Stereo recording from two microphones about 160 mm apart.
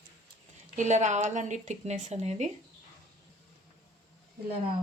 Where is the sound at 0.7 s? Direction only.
50° right (ahead or behind).